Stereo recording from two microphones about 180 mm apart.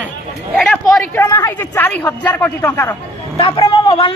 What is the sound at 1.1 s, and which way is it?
A man's voice, 15° left (ahead or behind).